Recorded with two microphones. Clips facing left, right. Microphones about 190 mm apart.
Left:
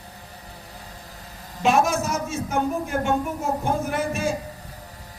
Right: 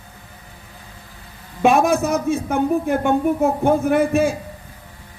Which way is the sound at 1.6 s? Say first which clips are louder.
Right 5 dB; 55° right (ahead or behind).